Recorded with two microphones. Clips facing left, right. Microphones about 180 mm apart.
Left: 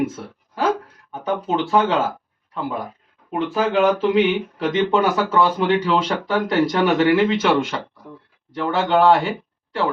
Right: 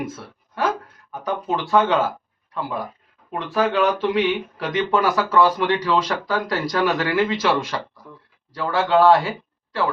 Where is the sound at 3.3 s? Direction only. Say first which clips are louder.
Left 1 dB; 25° left (ahead or behind).